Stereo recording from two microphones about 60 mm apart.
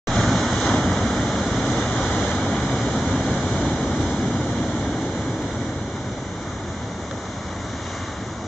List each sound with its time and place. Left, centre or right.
0.1 s waves: centre